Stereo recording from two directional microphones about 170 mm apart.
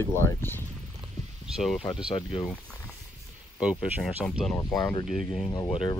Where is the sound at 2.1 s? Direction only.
30° left (ahead or behind).